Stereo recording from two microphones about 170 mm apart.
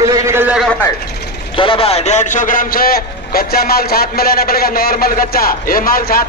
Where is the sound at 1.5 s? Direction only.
30° left (ahead or behind).